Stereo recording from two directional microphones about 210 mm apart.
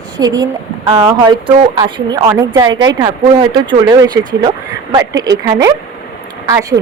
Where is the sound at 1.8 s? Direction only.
20° right (ahead or behind).